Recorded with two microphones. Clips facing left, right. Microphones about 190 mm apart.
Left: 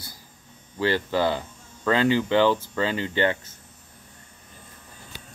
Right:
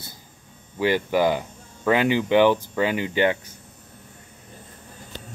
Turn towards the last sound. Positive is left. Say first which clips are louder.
# right 2 dB
turn(degrees=-15)  # may be behind; listen again after turning